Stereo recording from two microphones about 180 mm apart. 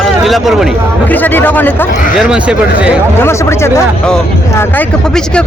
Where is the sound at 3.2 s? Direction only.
15° left (ahead or behind).